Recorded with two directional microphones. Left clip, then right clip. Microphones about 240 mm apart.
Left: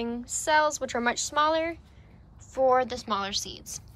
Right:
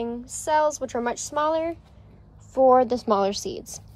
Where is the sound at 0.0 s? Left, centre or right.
Centre.